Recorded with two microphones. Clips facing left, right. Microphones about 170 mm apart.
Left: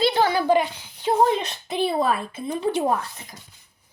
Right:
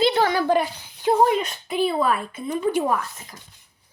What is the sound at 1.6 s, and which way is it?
A woman's voice, 35° left (ahead or behind).